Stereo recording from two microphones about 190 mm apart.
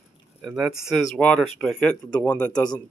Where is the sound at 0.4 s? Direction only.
5° right (ahead or behind).